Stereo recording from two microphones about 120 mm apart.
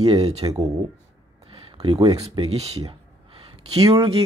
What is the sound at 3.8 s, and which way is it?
Speech, 35° right (ahead or behind).